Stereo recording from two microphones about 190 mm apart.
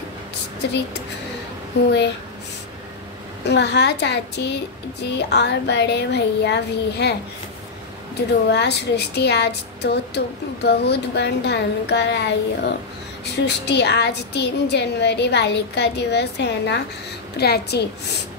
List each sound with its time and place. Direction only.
0.6 s a woman's voice: 65° left (ahead or behind)
3.4 s a woman's voice: 65° left (ahead or behind)
8.5 s a woman's voice: 60° left (ahead or behind)